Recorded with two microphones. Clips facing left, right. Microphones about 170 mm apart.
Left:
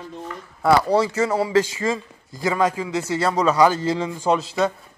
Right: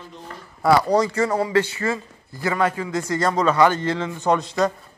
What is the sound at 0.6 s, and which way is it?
A man's voice, 5° left (ahead or behind).